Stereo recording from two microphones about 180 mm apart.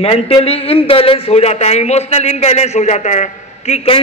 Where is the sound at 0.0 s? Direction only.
35° left (ahead or behind).